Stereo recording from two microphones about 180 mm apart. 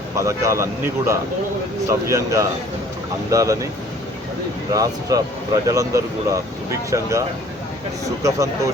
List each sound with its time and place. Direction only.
0.2 s speech: 15° right (ahead or behind)
4.7 s speech: 20° right (ahead or behind)